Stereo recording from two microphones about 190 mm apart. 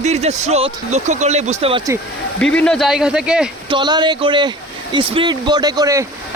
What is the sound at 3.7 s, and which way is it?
Speech, 25° right (ahead or behind).